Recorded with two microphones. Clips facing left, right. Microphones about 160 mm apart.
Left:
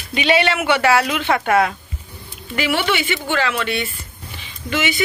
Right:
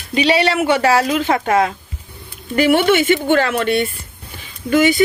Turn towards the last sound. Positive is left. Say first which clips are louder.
# right 8 dB
turn(degrees=-45)  # may be behind; listen again after turning